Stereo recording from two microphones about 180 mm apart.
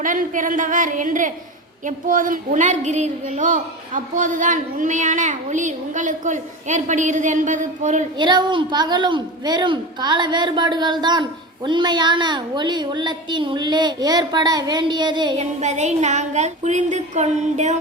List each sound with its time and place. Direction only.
0.0 s a woman's voice: 45° right (ahead or behind)
8.2 s a woman's voice: 25° right (ahead or behind)
15.4 s a sound: 40° right (ahead or behind)